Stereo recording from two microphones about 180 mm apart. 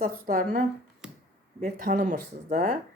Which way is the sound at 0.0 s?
50° right (ahead or behind).